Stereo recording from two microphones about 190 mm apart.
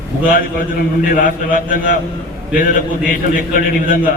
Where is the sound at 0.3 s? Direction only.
50° left (ahead or behind).